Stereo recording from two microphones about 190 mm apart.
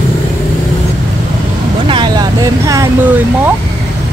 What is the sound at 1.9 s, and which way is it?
Speech, 20° right (ahead or behind).